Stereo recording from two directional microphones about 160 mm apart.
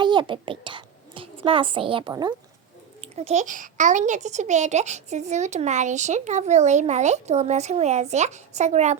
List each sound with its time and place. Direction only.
0.0 s a woman's voice: 30° right (ahead or behind)
3.0 s a child's voice: 40° right (ahead or behind)